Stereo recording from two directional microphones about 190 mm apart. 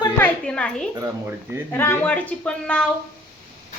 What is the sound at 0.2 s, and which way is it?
A child's voice, 5° left (ahead or behind).